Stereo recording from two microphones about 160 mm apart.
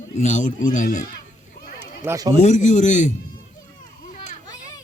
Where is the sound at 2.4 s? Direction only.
45° left (ahead or behind).